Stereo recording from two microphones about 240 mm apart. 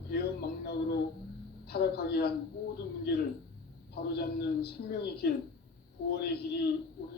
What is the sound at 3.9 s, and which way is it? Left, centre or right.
Speech, left.